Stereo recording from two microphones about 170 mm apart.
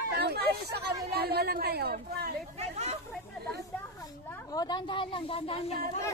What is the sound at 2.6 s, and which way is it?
Hubbub, 40° right (ahead or behind).